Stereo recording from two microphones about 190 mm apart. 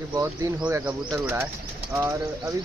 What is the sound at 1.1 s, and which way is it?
Speech, 15° right (ahead or behind).